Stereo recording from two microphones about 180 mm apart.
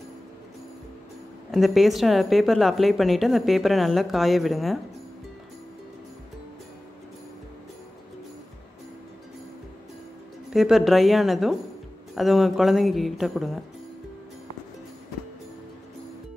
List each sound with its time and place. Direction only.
1.5 s speech: centre (ahead or behind)
10.5 s speech: centre (ahead or behind)